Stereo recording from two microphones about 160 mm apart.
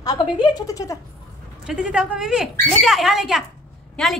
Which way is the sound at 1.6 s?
5° right (ahead or behind).